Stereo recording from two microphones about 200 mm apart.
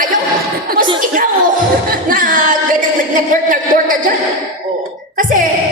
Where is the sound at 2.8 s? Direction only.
45° right (ahead or behind).